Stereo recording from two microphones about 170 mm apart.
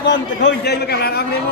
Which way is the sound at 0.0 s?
85° left.